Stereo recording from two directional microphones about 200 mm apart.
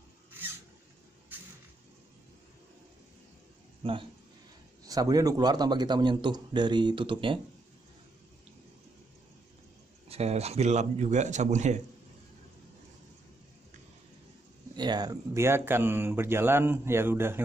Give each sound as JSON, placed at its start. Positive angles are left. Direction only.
{"t": 3.8, "sound": "a man's voice", "side_deg": -25}
{"t": 10.0, "sound": "a man's voice", "side_deg": -30}
{"t": 14.8, "sound": "speech", "side_deg": -20}